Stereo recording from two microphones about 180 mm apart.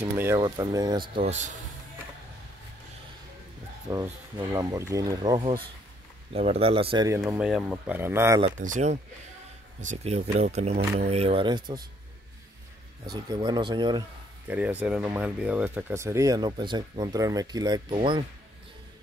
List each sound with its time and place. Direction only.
0.0 s speech: 15° right (ahead or behind); by 1.5 s 40° right (ahead or behind)
3.9 s speech: 15° right (ahead or behind)
6.3 s speech: 35° right (ahead or behind)
7.2 s speech: 5° right (ahead or behind)
8.4 s speech: 40° right (ahead or behind); by 11.8 s 25° right (ahead or behind)
13.1 s speech: 20° right (ahead or behind)
14.5 s speech: 10° right (ahead or behind); by 18.2 s 25° right (ahead or behind)